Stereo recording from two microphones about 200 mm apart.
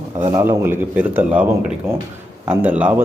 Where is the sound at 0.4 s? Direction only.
10° right (ahead or behind).